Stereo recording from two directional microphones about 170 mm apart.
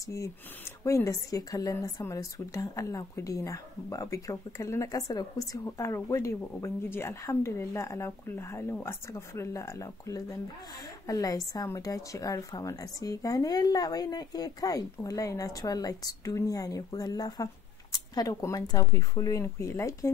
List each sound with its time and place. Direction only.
0.0 s a woman's voice: 20° left (ahead or behind)